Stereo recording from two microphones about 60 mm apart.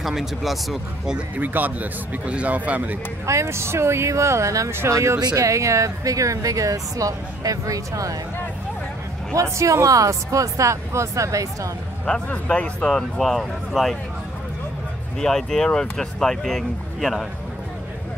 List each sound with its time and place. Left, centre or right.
0.0 s speech: centre
1.4 s speech: right
3.3 s speech: right
4.6 s speech: right
5.2 s speech: right
9.3 s speech: right
12.1 s speech: centre
12.8 s speech: centre
15.1 s speech: centre